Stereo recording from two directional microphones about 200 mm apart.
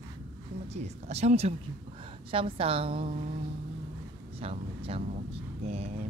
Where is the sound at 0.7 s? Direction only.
35° right (ahead or behind).